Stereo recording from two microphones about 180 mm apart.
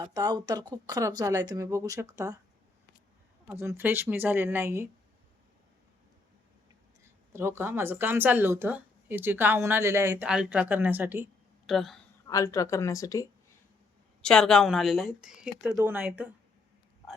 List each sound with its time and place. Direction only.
0.0 s speech: 20° right (ahead or behind)
3.4 s speech: 15° right (ahead or behind)
7.0 s speech: 15° right (ahead or behind)
10.2 s speech: 5° right (ahead or behind)
11.6 s speech: centre (ahead or behind)
12.3 s speech: 20° left (ahead or behind)
14.2 s a woman's voice: 5° left (ahead or behind)